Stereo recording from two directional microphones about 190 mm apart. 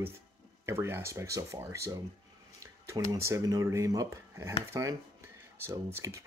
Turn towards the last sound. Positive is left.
turn(degrees=-15)  # may be behind; listen again after turning